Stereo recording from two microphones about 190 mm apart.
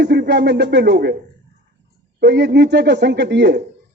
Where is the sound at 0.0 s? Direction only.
60° right (ahead or behind).